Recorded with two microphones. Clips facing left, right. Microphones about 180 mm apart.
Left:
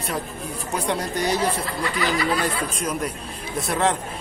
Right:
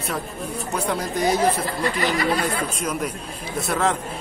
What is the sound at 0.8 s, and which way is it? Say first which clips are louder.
Speech: even; centre (ahead or behind).